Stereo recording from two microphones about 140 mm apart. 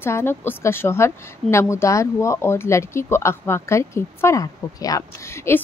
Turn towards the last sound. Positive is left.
turn(degrees=20)  # may be behind; listen again after turning